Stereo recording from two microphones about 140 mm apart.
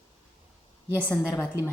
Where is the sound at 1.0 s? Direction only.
15° left (ahead or behind).